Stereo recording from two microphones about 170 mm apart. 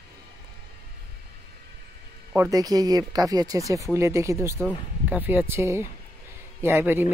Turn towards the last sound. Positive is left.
turn(degrees=-15)  # may be behind; listen again after turning